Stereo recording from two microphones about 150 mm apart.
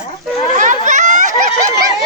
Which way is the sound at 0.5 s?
55° right (ahead or behind).